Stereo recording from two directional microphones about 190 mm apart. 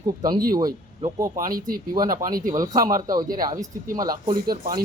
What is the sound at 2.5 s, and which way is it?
Speech, 20° right (ahead or behind).